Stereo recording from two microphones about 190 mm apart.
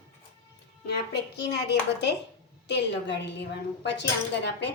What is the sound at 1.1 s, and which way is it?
Speech, 60° left (ahead or behind).